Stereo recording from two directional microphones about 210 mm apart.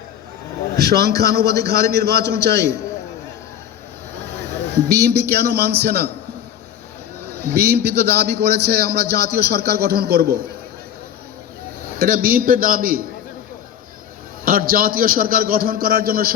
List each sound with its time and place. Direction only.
0.9 s a man's voice: 50° right (ahead or behind)
4.4 s a man's voice: 50° right (ahead or behind)
7.5 s a man's voice: 50° right (ahead or behind)
11.9 s a man's voice: 45° right (ahead or behind)
14.4 s a man's voice: 45° right (ahead or behind)